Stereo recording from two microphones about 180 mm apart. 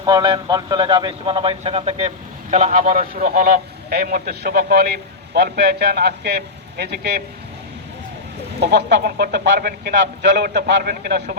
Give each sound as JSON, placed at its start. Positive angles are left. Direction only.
{"t": 0.0, "sound": "a man's voice", "side_deg": -20}
{"t": 8.6, "sound": "speech", "side_deg": -60}